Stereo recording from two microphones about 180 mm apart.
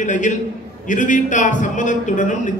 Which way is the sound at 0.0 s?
45° left (ahead or behind).